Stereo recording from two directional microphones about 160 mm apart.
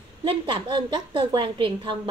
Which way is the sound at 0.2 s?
30° right (ahead or behind).